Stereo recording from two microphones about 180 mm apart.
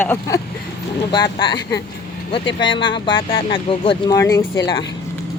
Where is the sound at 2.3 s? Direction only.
30° left (ahead or behind).